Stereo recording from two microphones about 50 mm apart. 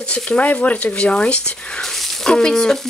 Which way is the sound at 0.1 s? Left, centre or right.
Left.